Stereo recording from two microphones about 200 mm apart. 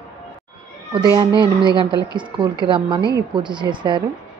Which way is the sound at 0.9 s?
20° right (ahead or behind).